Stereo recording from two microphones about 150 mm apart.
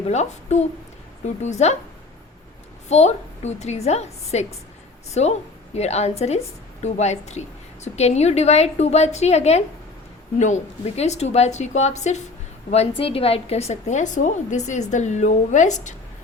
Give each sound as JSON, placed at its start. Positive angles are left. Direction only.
{"t": 0.1, "sound": "a woman's voice", "side_deg": 50}
{"t": 2.9, "sound": "a woman's voice", "side_deg": 50}